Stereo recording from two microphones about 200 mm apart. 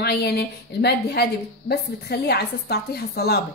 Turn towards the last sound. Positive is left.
turn(degrees=50)  # may be behind; listen again after turning